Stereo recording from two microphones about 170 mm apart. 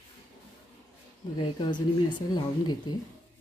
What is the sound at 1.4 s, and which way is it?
A woman's voice, 25° left (ahead or behind).